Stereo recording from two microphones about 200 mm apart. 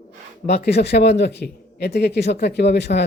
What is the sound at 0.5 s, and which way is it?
Speech, 55° left (ahead or behind).